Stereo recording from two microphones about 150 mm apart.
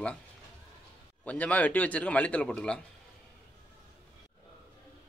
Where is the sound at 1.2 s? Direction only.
10° left (ahead or behind).